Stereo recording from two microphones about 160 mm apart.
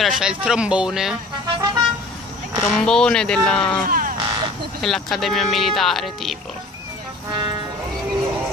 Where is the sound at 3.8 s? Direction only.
60° right (ahead or behind).